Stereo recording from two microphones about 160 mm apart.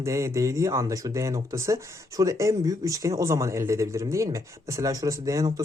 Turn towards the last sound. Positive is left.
turn(degrees=-20)  # may be behind; listen again after turning